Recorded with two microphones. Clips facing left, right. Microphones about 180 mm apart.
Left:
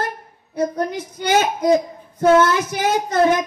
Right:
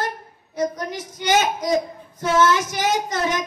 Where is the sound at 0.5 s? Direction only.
55° left (ahead or behind).